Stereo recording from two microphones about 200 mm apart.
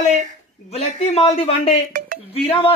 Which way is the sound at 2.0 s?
45° right (ahead or behind).